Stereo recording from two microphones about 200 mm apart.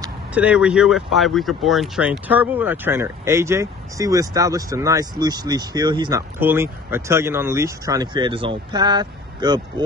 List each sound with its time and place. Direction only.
0.3 s speech: 5° right (ahead or behind); by 9.8 s 20° right (ahead or behind)